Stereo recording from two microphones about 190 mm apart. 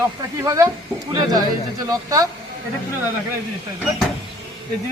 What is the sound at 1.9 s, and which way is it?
Speech, 20° right (ahead or behind).